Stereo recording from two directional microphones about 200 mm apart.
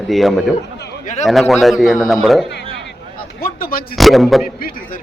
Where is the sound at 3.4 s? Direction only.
45° left (ahead or behind).